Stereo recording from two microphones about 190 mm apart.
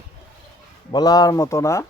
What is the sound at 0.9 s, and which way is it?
Speech, 20° left (ahead or behind).